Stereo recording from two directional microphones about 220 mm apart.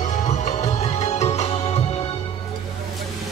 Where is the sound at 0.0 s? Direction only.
35° left (ahead or behind).